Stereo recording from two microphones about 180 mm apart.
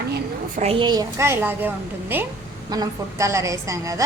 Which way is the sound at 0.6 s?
30° right (ahead or behind).